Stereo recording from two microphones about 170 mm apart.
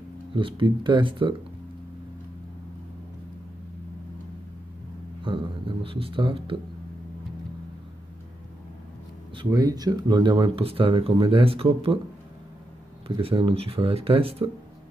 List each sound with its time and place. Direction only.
0.4 s speech: 30° right (ahead or behind)
5.2 s speech: 30° right (ahead or behind)
9.3 s speech: 25° right (ahead or behind)
13.1 s speech: 30° right (ahead or behind)